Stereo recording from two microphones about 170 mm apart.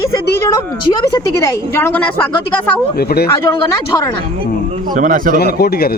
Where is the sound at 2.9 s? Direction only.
65° left (ahead or behind).